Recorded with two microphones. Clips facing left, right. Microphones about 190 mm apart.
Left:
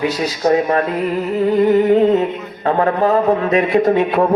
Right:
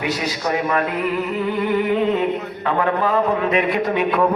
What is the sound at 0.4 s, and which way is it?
Speech, 30° left (ahead or behind).